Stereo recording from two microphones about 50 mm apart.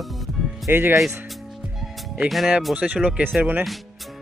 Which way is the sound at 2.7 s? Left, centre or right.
Right.